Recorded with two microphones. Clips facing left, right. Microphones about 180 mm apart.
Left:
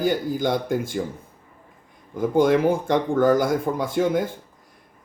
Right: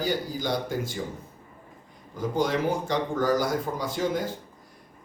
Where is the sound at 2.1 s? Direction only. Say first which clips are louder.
Left 8 dB; 55° left (ahead or behind).